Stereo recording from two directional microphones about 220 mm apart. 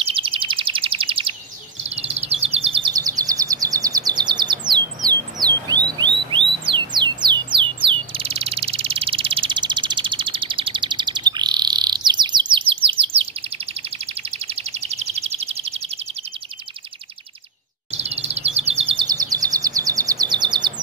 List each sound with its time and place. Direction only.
0.0 s bird: 25° right (ahead or behind)
1.8 s a sound: 30° right (ahead or behind)
17.9 s bird vocalization: 30° right (ahead or behind)